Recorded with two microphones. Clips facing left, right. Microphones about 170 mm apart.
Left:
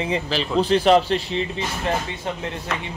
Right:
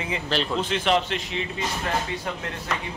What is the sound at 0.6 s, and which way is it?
Speech, 35° left (ahead or behind).